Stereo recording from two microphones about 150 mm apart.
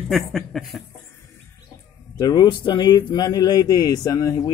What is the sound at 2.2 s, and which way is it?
Speech, 25° left (ahead or behind).